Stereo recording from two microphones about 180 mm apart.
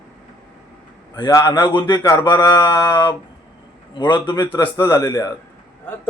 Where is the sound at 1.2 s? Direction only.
20° left (ahead or behind).